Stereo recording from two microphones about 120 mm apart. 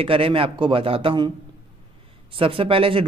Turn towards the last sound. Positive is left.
turn(degrees=-50)  # may be behind; listen again after turning